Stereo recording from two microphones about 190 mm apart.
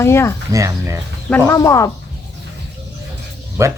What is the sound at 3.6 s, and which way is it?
Speech, 15° right (ahead or behind).